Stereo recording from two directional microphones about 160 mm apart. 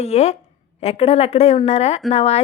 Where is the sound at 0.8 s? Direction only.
40° left (ahead or behind).